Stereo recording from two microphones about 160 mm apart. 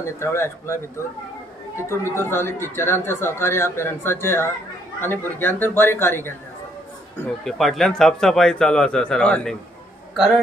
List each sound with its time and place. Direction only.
0.0 s speech: 15° left (ahead or behind)
1.8 s speech: 15° left (ahead or behind)
7.4 s speech: centre (ahead or behind)